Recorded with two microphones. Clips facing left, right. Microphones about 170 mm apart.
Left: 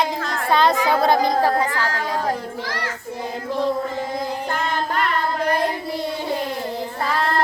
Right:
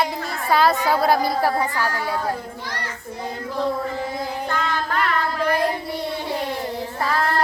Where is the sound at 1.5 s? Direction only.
10° right (ahead or behind).